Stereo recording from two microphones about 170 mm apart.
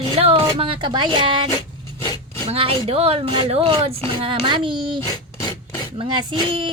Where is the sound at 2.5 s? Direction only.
35° right (ahead or behind).